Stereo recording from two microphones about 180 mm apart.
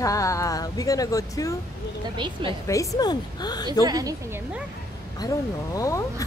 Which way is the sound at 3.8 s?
20° right (ahead or behind).